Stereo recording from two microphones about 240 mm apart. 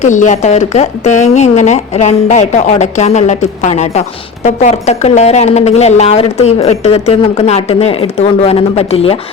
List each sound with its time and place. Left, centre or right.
0.0 s a woman's voice: left